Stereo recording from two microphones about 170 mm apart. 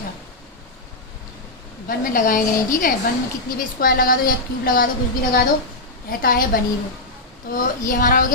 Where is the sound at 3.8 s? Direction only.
55° left (ahead or behind).